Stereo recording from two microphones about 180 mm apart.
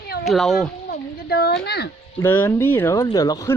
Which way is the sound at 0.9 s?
60° left (ahead or behind).